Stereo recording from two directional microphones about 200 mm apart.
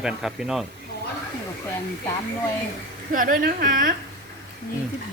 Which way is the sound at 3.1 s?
45° right (ahead or behind).